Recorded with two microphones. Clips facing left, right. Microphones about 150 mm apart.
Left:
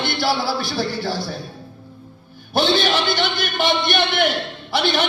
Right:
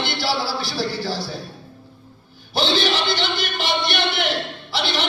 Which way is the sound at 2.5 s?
55° left (ahead or behind).